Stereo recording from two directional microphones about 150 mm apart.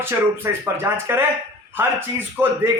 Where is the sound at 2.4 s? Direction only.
15° right (ahead or behind).